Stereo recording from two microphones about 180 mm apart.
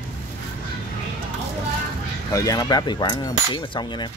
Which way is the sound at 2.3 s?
20° left (ahead or behind).